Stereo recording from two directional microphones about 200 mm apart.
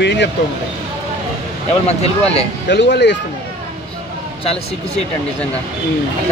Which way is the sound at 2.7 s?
60° left (ahead or behind).